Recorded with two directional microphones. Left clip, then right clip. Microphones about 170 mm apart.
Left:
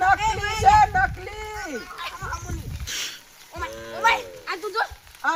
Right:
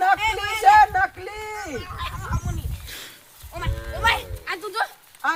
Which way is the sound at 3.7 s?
40° right (ahead or behind).